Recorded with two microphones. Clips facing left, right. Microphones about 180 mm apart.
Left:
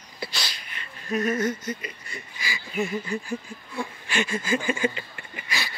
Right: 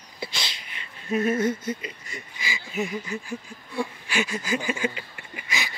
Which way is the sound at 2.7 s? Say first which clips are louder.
Left 2 dB; 5° right (ahead or behind).